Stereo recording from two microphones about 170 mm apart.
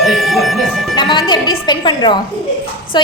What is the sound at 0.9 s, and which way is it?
A woman's voice, 25° left (ahead or behind).